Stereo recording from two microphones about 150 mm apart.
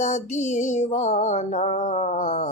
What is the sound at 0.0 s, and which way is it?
Music, 50° left (ahead or behind).